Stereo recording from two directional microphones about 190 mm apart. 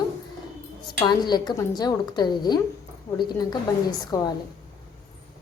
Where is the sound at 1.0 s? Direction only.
20° left (ahead or behind).